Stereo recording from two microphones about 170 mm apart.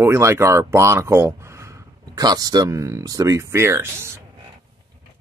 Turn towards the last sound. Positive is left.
turn(degrees=-15)  # may be behind; listen again after turning